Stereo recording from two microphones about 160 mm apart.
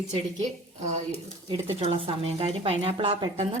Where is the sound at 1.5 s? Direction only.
35° right (ahead or behind).